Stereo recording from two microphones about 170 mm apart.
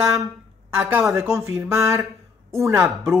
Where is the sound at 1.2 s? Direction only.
15° right (ahead or behind).